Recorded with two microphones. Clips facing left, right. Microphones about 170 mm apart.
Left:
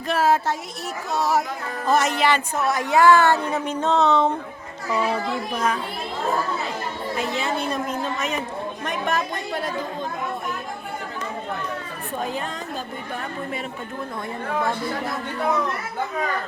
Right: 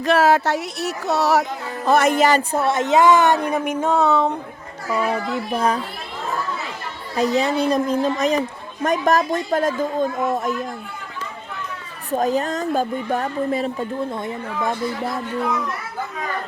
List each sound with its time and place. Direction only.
0.0 s speech: 75° right (ahead or behind)
1.9 s speech: 55° right (ahead or behind); by 4.4 s 5° right (ahead or behind)
5.5 s a woman's voice: 35° right (ahead or behind)
7.2 s a woman's voice: 40° right (ahead or behind)
12.1 s a woman's voice: 40° right (ahead or behind)